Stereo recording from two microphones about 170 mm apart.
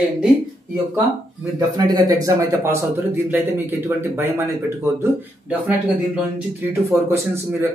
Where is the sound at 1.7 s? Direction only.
20° right (ahead or behind).